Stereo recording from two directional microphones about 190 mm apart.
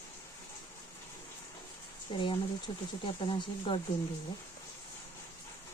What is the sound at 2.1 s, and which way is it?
Speech, 30° left (ahead or behind).